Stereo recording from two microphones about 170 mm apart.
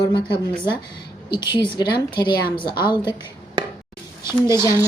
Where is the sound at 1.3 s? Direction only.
25° left (ahead or behind).